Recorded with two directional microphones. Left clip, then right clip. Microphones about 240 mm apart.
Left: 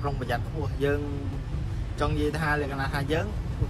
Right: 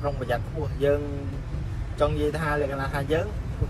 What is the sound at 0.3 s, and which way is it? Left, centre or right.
Speech, centre.